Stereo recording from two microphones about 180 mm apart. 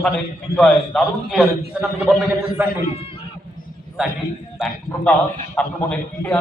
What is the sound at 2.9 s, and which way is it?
Bleat, 30° left (ahead or behind).